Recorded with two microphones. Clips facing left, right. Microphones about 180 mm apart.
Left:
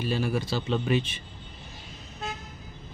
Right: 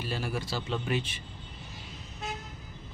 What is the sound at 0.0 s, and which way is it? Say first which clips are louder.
A man's voice: left 6 dB; 20° left (ahead or behind).